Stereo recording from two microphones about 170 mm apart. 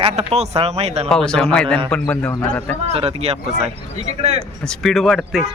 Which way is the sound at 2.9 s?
35° right (ahead or behind).